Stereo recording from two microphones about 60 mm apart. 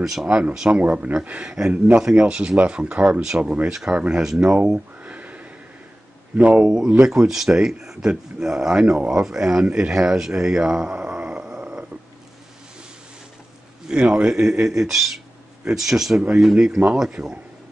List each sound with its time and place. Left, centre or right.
0.0 s speech: centre; by 1.5 s right
1.5 s speech: centre
4.7 s a sound: right
6.3 s speech: right
13.8 s a man's voice: centre